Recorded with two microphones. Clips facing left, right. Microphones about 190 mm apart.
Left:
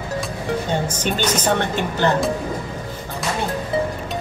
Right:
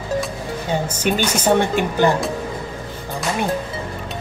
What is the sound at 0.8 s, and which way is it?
A woman's voice, 10° right (ahead or behind).